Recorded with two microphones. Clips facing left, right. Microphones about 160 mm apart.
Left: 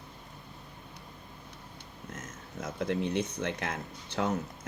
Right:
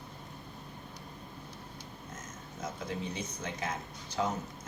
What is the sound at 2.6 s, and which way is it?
Speech, 60° left (ahead or behind).